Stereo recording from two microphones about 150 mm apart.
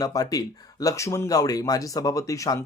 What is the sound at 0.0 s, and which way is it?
Speech, 25° left (ahead or behind).